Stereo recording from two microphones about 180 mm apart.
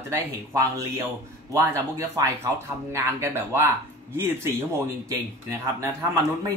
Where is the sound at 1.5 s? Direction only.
15° right (ahead or behind).